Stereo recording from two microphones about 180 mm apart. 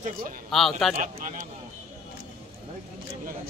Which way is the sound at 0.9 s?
45° right (ahead or behind).